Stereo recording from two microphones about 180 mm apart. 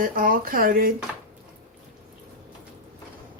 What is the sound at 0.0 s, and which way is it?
Speech, 50° right (ahead or behind).